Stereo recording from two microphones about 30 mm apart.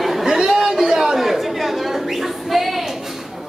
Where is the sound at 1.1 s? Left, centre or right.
Centre.